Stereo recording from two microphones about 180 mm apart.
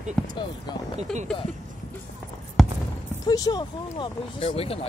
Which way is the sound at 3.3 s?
20° left (ahead or behind).